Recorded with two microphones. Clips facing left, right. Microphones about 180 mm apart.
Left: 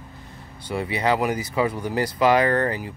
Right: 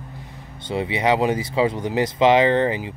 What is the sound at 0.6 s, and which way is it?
A man's voice, 25° right (ahead or behind).